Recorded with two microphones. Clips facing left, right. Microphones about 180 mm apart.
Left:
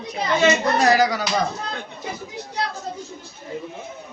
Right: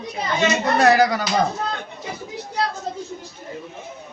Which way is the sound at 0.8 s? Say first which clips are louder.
Right 2 dB; 55° right (ahead or behind).